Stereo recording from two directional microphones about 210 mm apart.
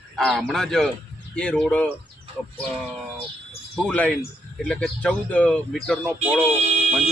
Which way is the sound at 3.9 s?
5° left (ahead or behind).